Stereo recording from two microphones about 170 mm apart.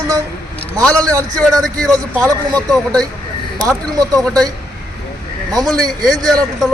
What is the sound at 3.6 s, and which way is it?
Speech, 20° right (ahead or behind).